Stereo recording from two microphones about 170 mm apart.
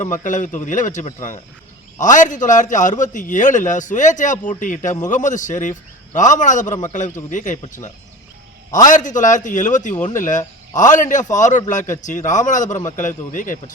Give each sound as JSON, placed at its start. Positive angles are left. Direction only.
{"t": 0.0, "sound": "a man's voice", "side_deg": 50}